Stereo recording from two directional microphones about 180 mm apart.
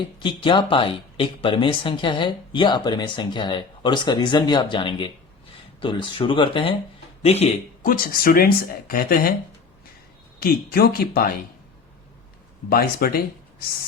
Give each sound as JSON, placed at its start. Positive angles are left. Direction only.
{"t": 0.2, "sound": "speech", "side_deg": 25}
{"t": 7.8, "sound": "speech", "side_deg": 50}
{"t": 10.4, "sound": "speech", "side_deg": 60}
{"t": 12.7, "sound": "speech", "side_deg": 55}